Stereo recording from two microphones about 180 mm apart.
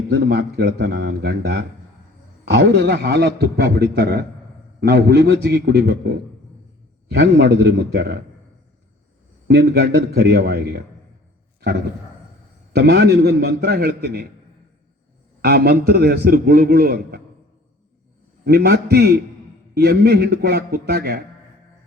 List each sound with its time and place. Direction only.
0.1 s a man's voice: 60° right (ahead or behind)
9.5 s a man's voice: 60° right (ahead or behind)
12.7 s a man's voice: 65° right (ahead or behind)
15.4 s a man's voice: 60° right (ahead or behind)
18.4 s a man's voice: 60° right (ahead or behind)